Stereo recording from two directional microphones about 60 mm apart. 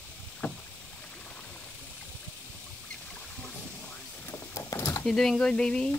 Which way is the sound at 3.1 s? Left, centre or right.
Left.